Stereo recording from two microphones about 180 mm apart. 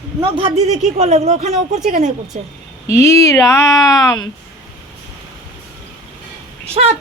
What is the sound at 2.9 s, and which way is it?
Speech, 15° left (ahead or behind).